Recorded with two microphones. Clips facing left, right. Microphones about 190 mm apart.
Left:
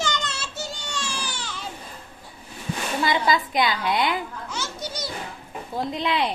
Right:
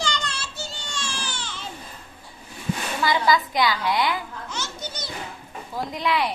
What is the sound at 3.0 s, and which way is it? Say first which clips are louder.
A woman's voice: right 2 dB; 25° left (ahead or behind).